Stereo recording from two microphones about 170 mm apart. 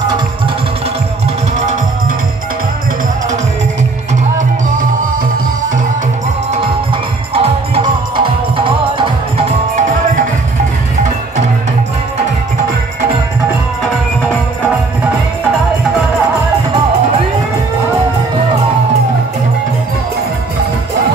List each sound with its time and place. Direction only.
7.3 s music: 30° right (ahead or behind)